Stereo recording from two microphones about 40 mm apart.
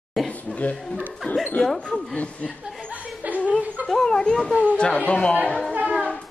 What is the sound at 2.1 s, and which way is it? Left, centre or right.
Speech, left.